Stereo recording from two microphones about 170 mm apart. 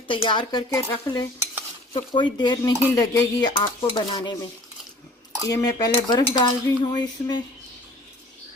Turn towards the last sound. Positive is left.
turn(degrees=25)  # may be behind; listen again after turning